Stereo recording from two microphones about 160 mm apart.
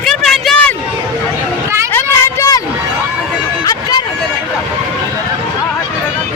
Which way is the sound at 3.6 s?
25° left (ahead or behind).